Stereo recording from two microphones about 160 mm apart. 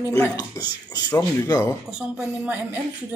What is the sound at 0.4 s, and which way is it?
Speech, 25° left (ahead or behind).